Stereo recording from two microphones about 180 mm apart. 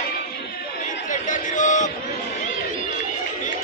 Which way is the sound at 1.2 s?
45° left (ahead or behind).